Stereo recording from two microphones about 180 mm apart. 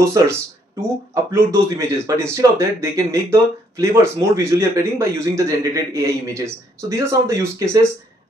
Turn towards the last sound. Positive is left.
turn(degrees=-15)  # may be behind; listen again after turning